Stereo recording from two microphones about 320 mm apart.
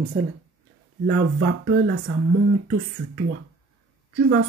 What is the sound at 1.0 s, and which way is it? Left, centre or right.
Speech, right.